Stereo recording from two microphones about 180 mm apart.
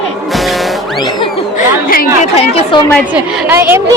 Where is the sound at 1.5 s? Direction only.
55° left (ahead or behind).